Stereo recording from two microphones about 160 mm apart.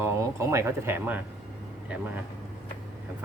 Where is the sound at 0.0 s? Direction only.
15° right (ahead or behind).